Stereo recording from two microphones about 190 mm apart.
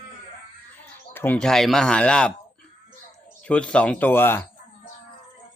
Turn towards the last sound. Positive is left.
turn(degrees=10)  # may be behind; listen again after turning